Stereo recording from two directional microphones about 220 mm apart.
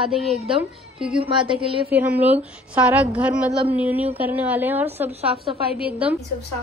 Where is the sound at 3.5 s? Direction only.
25° right (ahead or behind).